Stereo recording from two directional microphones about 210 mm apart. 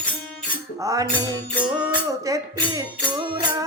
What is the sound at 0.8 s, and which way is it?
Music, 15° right (ahead or behind).